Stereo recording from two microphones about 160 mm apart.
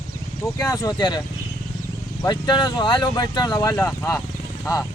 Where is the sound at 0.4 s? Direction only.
20° left (ahead or behind).